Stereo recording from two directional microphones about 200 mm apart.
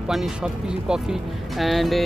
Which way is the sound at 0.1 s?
5° right (ahead or behind).